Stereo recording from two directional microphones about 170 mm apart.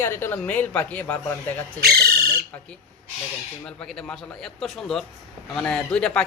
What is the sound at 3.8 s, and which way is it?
A man's voice, 5° left (ahead or behind).